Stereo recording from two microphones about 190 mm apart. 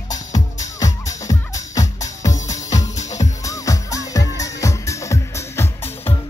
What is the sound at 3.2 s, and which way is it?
Music, 15° left (ahead or behind).